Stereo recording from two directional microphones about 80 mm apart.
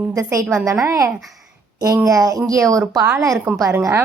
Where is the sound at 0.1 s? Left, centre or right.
Right.